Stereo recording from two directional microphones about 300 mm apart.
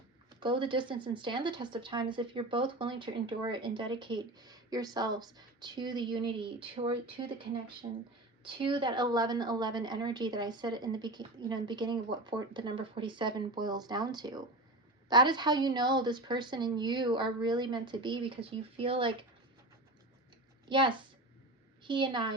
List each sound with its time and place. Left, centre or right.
0.3 s speech: centre
20.7 s speech: centre